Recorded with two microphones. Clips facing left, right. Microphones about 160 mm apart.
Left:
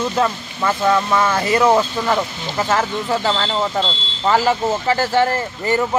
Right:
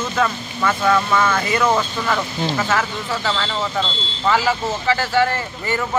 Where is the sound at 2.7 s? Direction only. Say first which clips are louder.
Left 3 dB; 30° left (ahead or behind).